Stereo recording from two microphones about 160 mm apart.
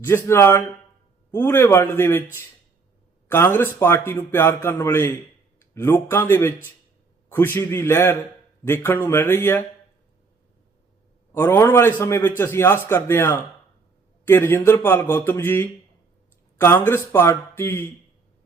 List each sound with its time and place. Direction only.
0.3 s a man's voice: 15° left (ahead or behind)
3.2 s a man's voice: 10° left (ahead or behind)
11.3 s a man's voice: 15° left (ahead or behind)